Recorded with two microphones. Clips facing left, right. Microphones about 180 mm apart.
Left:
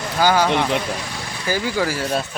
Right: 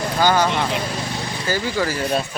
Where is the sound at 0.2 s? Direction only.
10° left (ahead or behind).